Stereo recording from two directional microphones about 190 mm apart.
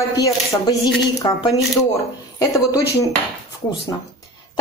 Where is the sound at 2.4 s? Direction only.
20° left (ahead or behind).